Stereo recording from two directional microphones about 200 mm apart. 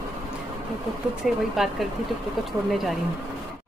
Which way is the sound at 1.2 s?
Centre (ahead or behind).